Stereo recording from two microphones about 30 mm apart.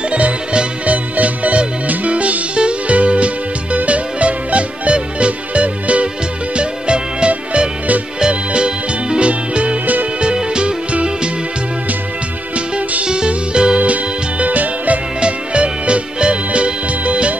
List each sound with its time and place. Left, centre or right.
0.1 s music: right
0.8 s music: right
6.5 s music: right
13.0 s music: right
13.7 s music: right
15.1 s music: right